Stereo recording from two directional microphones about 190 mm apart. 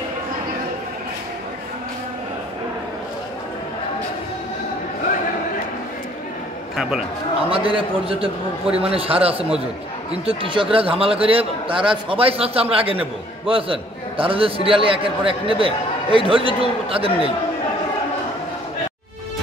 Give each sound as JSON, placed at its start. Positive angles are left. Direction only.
{"t": 7.4, "sound": "a man's voice", "side_deg": -30}